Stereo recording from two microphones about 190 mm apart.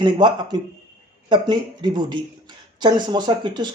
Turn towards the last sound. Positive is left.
turn(degrees=-25)  # may be behind; listen again after turning